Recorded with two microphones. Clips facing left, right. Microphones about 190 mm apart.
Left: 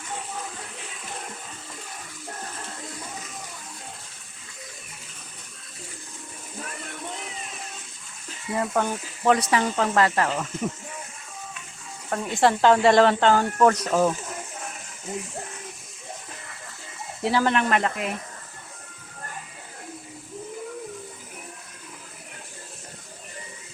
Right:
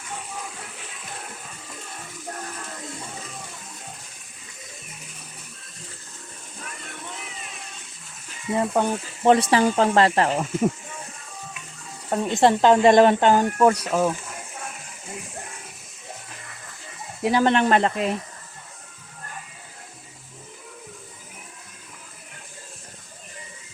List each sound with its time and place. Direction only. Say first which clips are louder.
8.5 s speech: right 3 dB; 20° right (ahead or behind)
9.3 s speech: right 4 dB; 30° right (ahead or behind)
12.0 s speech: right 3 dB; 20° right (ahead or behind)
17.2 s speech: right 3 dB; 20° right (ahead or behind)
17.5 s speech: right 4 dB; 30° right (ahead or behind)